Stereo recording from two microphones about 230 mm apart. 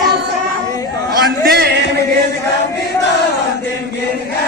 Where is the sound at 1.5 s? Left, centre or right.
Right.